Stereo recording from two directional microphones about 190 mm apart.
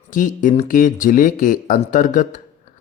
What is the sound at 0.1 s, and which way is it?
Speech, 45° left (ahead or behind).